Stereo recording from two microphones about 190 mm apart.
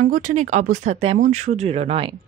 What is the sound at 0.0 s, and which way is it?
A woman's voice, 40° right (ahead or behind).